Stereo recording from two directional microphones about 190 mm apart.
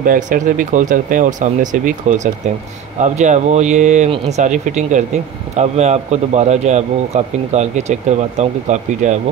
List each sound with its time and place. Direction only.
0.0 s speech: 45° right (ahead or behind)